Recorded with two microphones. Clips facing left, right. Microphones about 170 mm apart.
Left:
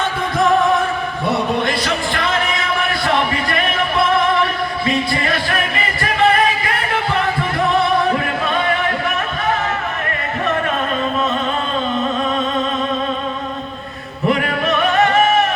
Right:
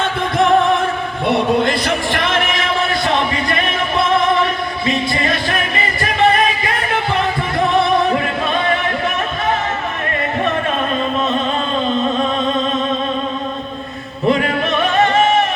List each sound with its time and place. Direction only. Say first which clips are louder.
3.1 s music: even; 20° right (ahead or behind)
14.3 s music: right 2 dB; 25° right (ahead or behind)